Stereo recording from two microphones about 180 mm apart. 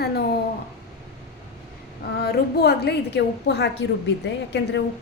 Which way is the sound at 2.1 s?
60° left (ahead or behind).